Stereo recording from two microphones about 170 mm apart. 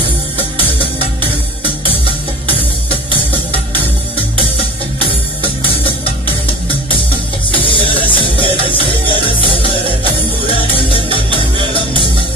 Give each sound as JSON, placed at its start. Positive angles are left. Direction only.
{"t": 7.5, "sound": "music", "side_deg": 30}